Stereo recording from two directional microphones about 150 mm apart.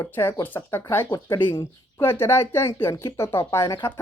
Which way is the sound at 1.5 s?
25° left (ahead or behind).